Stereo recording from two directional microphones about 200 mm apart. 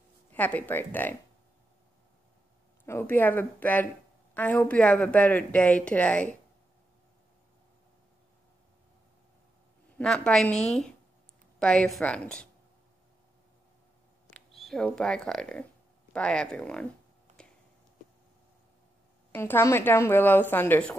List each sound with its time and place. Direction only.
0.3 s speech: 10° left (ahead or behind)
2.8 s speech: 10° left (ahead or behind)
9.9 s a woman's voice: 5° left (ahead or behind)
14.3 s a woman's voice: centre (ahead or behind)
17.3 s a sound: 35° right (ahead or behind)
19.3 s speech: 10° left (ahead or behind)